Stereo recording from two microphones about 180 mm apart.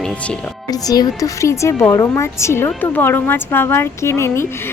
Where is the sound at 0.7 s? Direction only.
20° left (ahead or behind).